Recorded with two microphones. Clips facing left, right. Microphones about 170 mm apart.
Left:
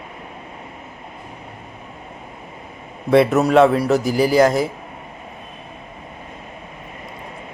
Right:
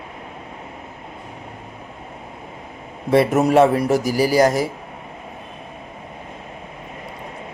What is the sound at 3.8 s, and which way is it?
Speech, 50° right (ahead or behind).